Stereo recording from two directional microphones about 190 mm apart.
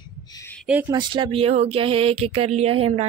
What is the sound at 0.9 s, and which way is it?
Speech, 25° right (ahead or behind).